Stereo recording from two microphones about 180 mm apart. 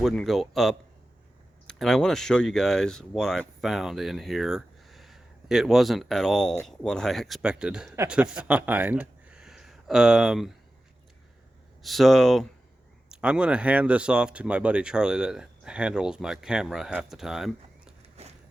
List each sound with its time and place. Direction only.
0.0 s speech: centre (ahead or behind)
7.9 s a man's voice: 15° right (ahead or behind)
8.1 s speech: 5° right (ahead or behind)
11.8 s speech: centre (ahead or behind)